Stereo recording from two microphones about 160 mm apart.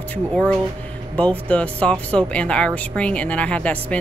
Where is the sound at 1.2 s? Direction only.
10° left (ahead or behind).